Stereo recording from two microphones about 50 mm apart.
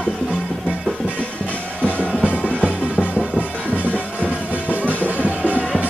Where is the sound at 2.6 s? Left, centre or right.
Right.